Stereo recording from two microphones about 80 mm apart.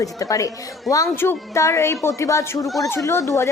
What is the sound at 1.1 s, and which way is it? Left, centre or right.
Speech, left.